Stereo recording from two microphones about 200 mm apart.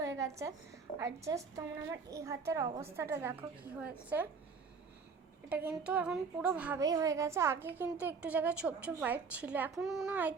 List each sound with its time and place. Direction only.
0.0 s a sound: 15° right (ahead or behind)
0.9 s a woman's voice: 15° right (ahead or behind)
5.5 s a woman's voice: 10° right (ahead or behind)
6.8 s a woman's voice: 15° right (ahead or behind)